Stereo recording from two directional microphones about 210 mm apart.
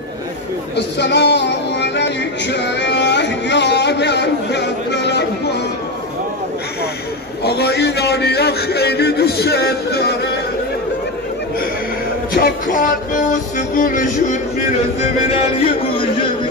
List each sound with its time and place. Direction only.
0.7 s music: 55° left (ahead or behind)
7.4 s a man's voice: 50° left (ahead or behind)
12.4 s music: 40° left (ahead or behind)